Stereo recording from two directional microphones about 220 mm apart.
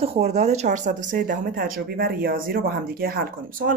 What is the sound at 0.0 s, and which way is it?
Speech, 30° right (ahead or behind).